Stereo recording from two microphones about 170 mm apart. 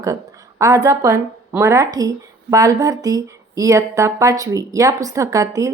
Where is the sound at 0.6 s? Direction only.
20° right (ahead or behind).